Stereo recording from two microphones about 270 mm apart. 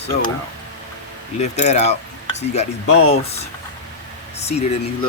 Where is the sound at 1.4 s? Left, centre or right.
Left.